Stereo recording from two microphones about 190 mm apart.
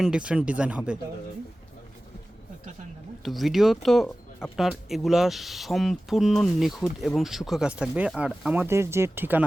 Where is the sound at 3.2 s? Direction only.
Centre (ahead or behind).